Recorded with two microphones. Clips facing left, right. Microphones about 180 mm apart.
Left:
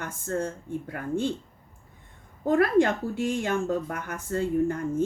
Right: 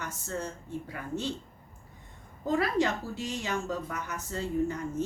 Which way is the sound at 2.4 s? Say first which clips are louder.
Left 6 dB; 55° left (ahead or behind).